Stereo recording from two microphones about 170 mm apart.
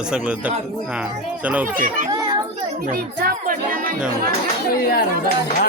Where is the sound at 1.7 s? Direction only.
50° right (ahead or behind).